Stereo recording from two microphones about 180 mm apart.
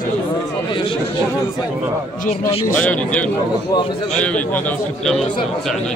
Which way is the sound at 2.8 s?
5° left (ahead or behind).